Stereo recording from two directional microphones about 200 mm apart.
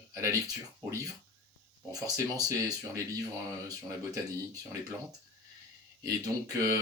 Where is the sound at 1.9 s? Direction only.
15° right (ahead or behind).